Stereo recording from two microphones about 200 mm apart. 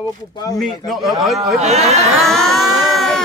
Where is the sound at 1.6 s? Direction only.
35° right (ahead or behind).